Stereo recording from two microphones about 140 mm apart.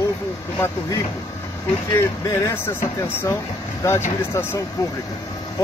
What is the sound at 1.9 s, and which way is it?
Speech, 20° left (ahead or behind).